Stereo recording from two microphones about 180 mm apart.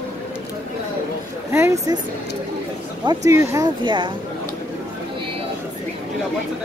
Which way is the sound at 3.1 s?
20° right (ahead or behind).